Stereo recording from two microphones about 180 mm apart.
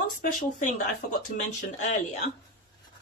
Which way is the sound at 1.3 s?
45° left (ahead or behind).